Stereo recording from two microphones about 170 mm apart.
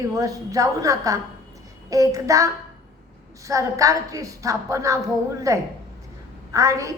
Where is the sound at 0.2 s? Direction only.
20° right (ahead or behind).